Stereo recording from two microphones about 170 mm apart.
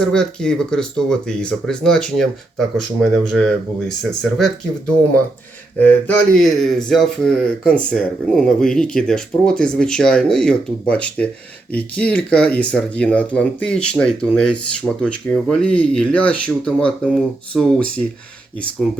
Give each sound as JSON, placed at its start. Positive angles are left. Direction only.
{"t": 0.0, "sound": "speech", "side_deg": 5}
{"t": 5.8, "sound": "speech", "side_deg": 10}